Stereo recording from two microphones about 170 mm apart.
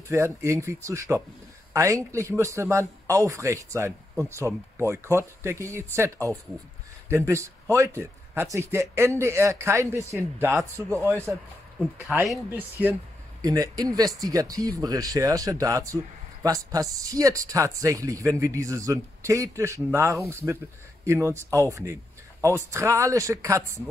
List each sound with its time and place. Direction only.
0.1 s speech: 15° right (ahead or behind)
12.1 s speech: centre (ahead or behind)
13.4 s speech: 20° right (ahead or behind)